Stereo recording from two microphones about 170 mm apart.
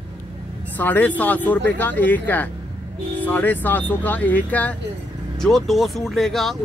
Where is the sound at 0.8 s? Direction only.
10° left (ahead or behind).